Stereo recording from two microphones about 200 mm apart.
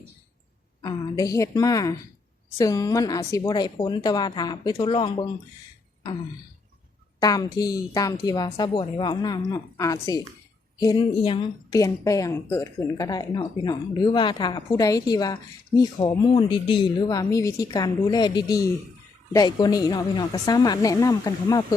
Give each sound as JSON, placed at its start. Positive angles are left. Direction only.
{"t": 0.8, "sound": "a woman's voice", "side_deg": 20}
{"t": 7.2, "sound": "a woman's voice", "side_deg": 20}